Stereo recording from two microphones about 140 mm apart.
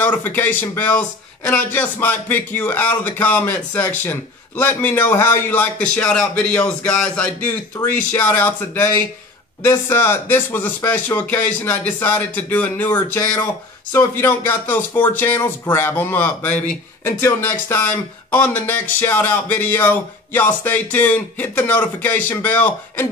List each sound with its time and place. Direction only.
0.0 s speech: 15° left (ahead or behind)